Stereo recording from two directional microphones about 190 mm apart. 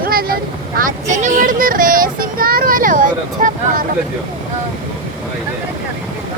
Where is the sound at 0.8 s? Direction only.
40° right (ahead or behind).